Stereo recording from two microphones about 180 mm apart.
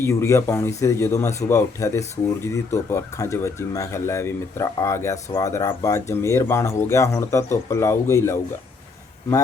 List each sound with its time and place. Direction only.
0.0 s speech: 15° left (ahead or behind)